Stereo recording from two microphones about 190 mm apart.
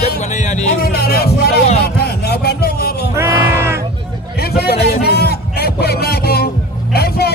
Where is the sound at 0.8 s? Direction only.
55° left (ahead or behind).